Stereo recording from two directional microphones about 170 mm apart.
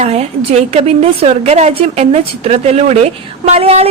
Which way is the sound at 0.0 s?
40° right (ahead or behind).